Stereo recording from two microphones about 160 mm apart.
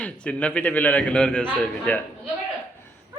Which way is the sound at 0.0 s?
5° left (ahead or behind).